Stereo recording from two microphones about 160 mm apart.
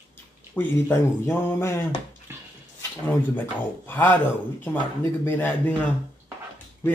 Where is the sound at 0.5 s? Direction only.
15° left (ahead or behind).